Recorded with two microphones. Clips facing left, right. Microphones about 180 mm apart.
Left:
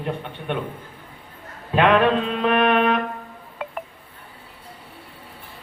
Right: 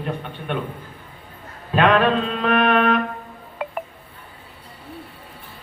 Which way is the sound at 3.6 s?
5° right (ahead or behind).